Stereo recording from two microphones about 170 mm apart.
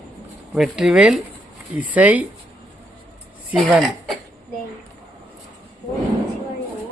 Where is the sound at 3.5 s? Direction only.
Centre (ahead or behind).